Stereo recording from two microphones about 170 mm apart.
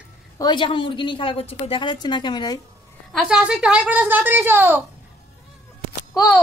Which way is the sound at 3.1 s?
5° right (ahead or behind).